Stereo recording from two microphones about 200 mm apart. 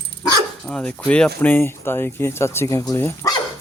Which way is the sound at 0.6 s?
5° left (ahead or behind).